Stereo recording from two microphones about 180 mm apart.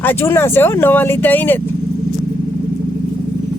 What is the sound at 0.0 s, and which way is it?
Speech, 10° left (ahead or behind).